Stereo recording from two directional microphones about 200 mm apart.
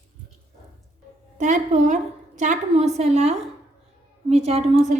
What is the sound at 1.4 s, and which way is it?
A woman's voice, 35° right (ahead or behind).